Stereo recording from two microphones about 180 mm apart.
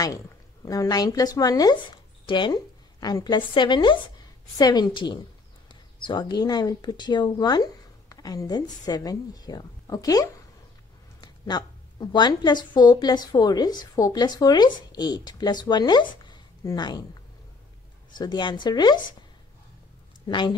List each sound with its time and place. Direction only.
0.7 s a woman's voice: 20° left (ahead or behind)
20.2 s speech: 25° left (ahead or behind)